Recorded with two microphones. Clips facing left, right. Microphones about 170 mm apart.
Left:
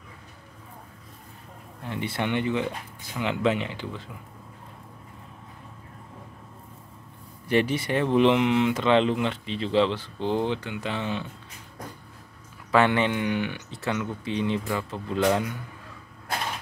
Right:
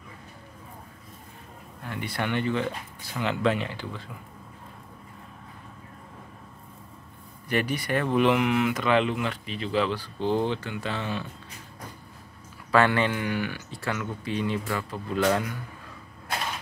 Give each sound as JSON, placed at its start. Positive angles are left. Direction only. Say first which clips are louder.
{"t": 1.9, "sound": "speech", "louder": "left 2 dB", "side_deg": 25}
{"t": 7.4, "sound": "speech", "louder": "left 4 dB", "side_deg": 25}
{"t": 12.7, "sound": "speech", "louder": "left 1 dB", "side_deg": 20}